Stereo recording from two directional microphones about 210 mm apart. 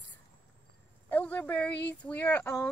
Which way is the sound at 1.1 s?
5° left (ahead or behind).